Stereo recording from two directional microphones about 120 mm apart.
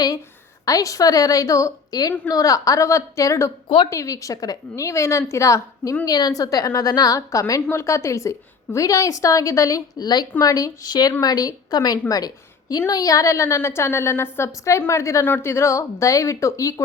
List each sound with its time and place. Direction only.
0.6 s a woman's voice: 30° left (ahead or behind)